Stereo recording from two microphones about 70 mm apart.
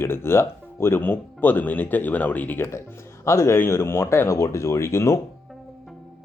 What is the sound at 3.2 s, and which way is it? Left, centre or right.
Speech, left.